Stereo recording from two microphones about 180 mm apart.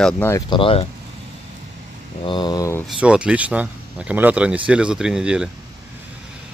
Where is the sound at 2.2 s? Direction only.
25° left (ahead or behind).